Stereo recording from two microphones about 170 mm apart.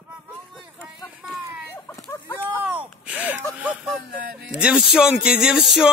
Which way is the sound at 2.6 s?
10° right (ahead or behind).